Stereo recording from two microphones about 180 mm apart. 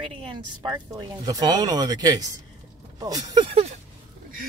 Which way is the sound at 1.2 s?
20° right (ahead or behind).